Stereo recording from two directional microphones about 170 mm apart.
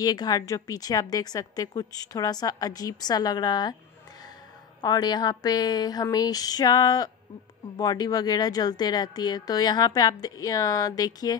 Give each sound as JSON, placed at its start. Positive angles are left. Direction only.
{"t": 0.0, "sound": "a woman's voice", "side_deg": 25}
{"t": 4.8, "sound": "a woman's voice", "side_deg": 25}